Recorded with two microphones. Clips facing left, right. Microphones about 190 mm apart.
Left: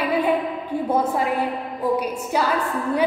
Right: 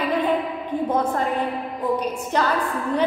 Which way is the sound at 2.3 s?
10° left (ahead or behind).